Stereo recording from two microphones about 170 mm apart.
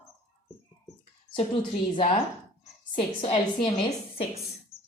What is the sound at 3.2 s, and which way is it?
Speech, 35° left (ahead or behind).